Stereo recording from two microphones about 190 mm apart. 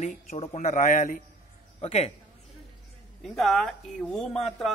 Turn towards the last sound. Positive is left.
turn(degrees=0)  # may be behind; listen again after turning